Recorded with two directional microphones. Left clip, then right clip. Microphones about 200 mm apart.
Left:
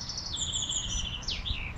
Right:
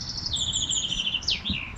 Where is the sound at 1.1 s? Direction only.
50° right (ahead or behind).